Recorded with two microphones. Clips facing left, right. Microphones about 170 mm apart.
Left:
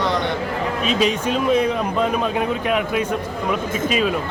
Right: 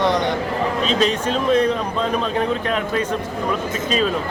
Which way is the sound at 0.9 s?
10° left (ahead or behind).